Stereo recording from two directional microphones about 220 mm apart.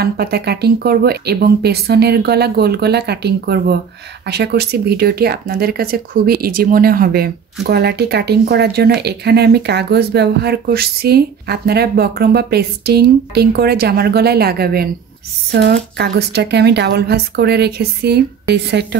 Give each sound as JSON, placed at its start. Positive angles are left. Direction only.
{"t": 0.0, "sound": "speech", "side_deg": -45}
{"t": 16.0, "sound": "speech", "side_deg": -50}